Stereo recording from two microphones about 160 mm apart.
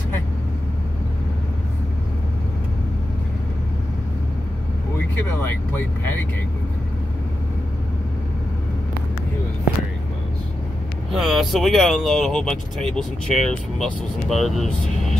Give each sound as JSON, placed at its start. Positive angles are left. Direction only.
{"t": 5.4, "sound": "speech", "side_deg": 10}
{"t": 11.1, "sound": "speech", "side_deg": 0}